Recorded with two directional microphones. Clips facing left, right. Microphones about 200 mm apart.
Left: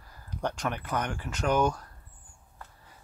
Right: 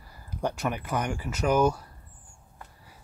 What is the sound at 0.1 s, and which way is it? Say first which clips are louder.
Speech: right 2 dB; 10° right (ahead or behind).